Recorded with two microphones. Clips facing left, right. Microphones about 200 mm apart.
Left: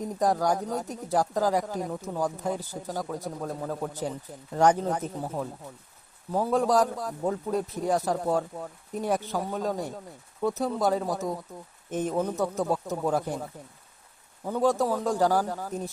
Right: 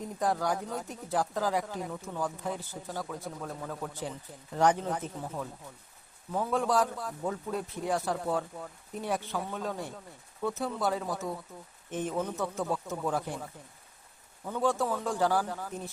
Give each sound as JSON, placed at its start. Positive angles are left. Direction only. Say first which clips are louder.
{"t": 0.2, "sound": "speech", "louder": "left 5 dB", "side_deg": 40}
{"t": 14.4, "sound": "speech", "louder": "left 5 dB", "side_deg": 40}